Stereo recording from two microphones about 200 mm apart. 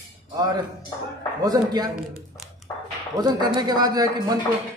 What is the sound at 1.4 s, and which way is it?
Speech, 20° right (ahead or behind).